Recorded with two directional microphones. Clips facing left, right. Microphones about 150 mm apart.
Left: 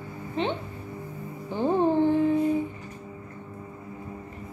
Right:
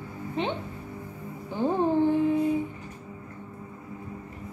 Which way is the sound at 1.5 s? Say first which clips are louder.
Left 1 dB; 15° left (ahead or behind).